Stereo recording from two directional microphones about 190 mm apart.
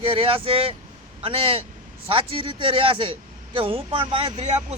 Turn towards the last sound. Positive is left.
turn(degrees=-35)  # may be behind; listen again after turning